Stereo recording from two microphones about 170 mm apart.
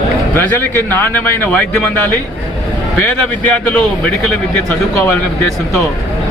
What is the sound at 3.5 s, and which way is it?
Speech, 10° left (ahead or behind).